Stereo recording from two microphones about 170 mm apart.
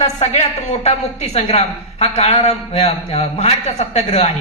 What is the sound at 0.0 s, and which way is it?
A woman's voice, 40° left (ahead or behind).